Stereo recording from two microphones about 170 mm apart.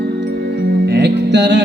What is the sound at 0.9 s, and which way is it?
Music, 85° right.